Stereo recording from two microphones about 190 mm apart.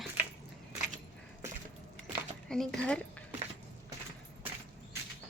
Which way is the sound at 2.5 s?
5° left (ahead or behind).